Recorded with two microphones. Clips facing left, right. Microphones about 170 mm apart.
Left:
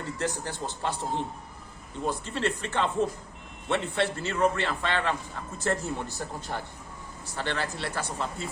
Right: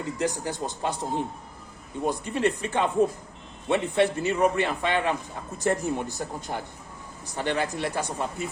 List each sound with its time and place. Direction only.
0.2 s a man's voice: 15° right (ahead or behind)